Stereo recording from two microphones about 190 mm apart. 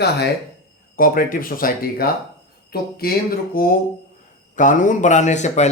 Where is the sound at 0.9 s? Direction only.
50° left (ahead or behind).